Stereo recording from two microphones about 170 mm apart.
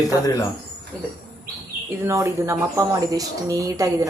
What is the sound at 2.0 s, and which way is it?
A woman's voice, 15° right (ahead or behind).